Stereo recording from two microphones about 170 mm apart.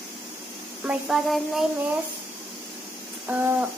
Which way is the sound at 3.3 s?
10° right (ahead or behind).